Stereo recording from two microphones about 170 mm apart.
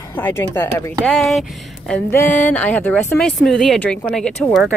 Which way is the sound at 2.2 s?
45° left (ahead or behind).